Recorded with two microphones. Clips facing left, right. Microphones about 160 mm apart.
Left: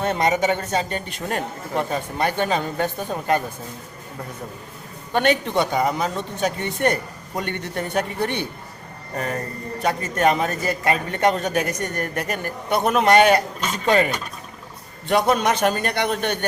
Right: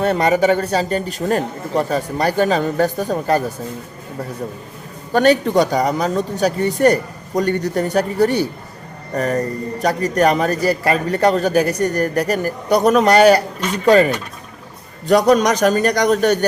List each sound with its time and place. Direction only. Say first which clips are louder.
0.0 s a man's voice: right 5 dB; 35° right (ahead or behind)
5.1 s a man's voice: right 6 dB; 40° right (ahead or behind)